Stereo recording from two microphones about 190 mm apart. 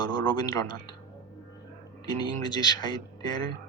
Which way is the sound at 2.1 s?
20° left (ahead or behind).